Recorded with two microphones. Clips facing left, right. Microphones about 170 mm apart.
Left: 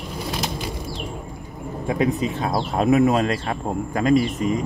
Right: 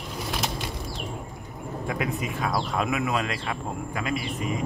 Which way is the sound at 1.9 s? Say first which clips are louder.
Left 8 dB; 25° left (ahead or behind).